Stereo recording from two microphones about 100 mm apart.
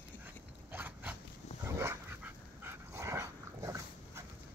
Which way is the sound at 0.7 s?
20° right (ahead or behind).